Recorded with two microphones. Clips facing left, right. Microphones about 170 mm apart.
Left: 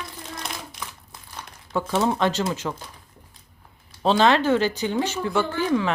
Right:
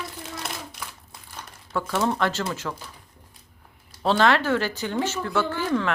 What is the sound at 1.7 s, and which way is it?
Speech, 15° left (ahead or behind).